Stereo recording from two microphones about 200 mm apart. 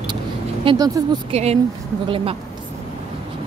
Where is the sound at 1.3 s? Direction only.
30° right (ahead or behind).